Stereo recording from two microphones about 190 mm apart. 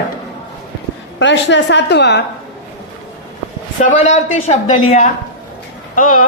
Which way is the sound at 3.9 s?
40° left (ahead or behind).